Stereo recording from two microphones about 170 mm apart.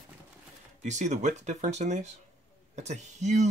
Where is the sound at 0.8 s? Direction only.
45° right (ahead or behind).